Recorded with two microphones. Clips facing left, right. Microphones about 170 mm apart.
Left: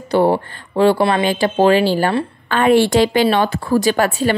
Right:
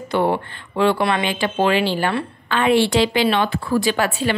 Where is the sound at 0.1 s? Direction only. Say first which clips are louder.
Left 5 dB; 35° left (ahead or behind).